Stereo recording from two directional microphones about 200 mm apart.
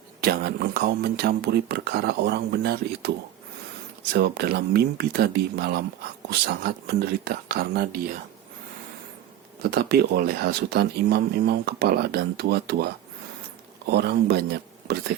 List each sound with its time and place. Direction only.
0.2 s speech: 50° right (ahead or behind)
4.1 s speech: 50° right (ahead or behind)
9.6 s speech: 50° right (ahead or behind)